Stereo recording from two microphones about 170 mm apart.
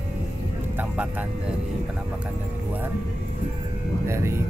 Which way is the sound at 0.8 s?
10° right (ahead or behind).